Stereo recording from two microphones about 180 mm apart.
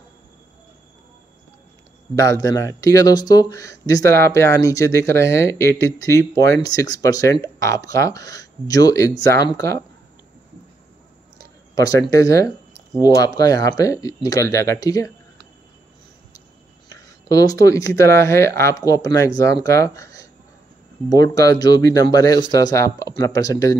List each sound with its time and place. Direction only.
2.1 s speech: 20° left (ahead or behind)
11.7 s speech: 20° left (ahead or behind)
16.9 s speech: 20° left (ahead or behind)